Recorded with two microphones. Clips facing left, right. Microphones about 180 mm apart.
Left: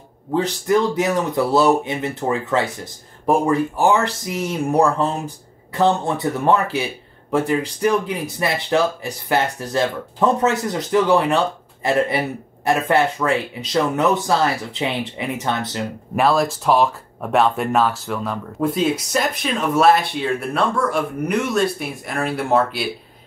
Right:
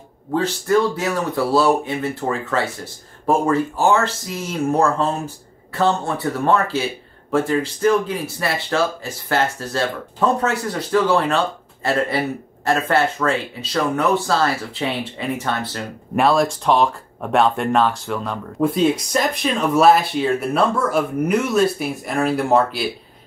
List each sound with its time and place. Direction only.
0.3 s speech: 15° left (ahead or behind)
16.2 s speech: centre (ahead or behind)